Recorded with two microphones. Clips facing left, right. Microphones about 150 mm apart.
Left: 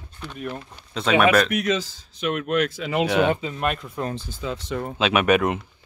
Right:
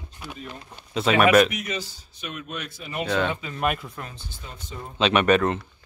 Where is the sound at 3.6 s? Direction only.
5° right (ahead or behind).